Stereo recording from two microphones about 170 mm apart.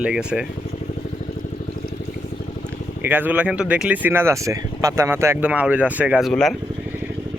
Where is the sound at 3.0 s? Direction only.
10° right (ahead or behind).